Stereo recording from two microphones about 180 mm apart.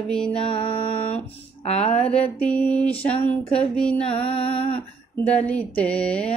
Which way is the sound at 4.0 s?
30° left (ahead or behind).